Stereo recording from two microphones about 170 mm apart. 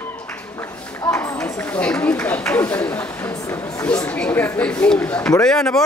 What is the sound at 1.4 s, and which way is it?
A man's voice, 10° left (ahead or behind).